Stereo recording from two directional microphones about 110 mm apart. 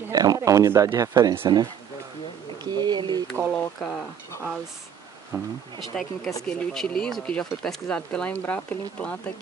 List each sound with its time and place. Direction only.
0.1 s speech: 35° right (ahead or behind)
2.6 s bird: 40° right (ahead or behind)
3.5 s speech: 5° left (ahead or behind)
5.3 s speech: centre (ahead or behind)